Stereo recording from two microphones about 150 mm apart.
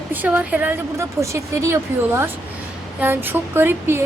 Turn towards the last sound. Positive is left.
turn(degrees=-15)  # may be behind; listen again after turning